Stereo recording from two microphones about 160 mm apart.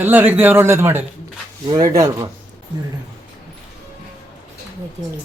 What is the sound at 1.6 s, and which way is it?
Speech, 25° right (ahead or behind).